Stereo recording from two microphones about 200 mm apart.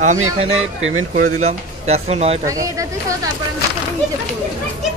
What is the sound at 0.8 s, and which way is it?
Speech, 80° right.